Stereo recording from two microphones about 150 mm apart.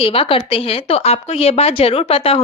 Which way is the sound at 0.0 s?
40° left (ahead or behind).